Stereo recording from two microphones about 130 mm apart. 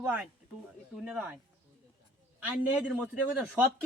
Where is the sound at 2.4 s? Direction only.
10° right (ahead or behind).